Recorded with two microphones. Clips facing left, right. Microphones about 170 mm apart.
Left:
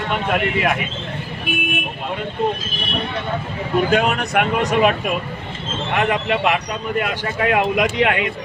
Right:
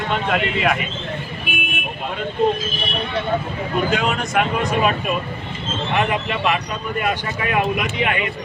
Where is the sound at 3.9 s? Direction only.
60° left (ahead or behind); by 4.9 s 75° left (ahead or behind).